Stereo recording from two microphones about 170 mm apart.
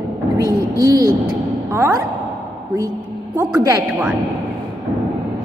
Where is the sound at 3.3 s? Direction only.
20° right (ahead or behind).